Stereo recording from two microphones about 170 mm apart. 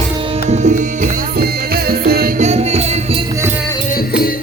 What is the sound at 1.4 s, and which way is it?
Music, 65° right (ahead or behind).